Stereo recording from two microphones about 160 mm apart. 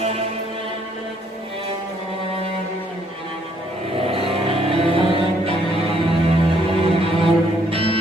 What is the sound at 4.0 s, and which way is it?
Music, 35° right (ahead or behind).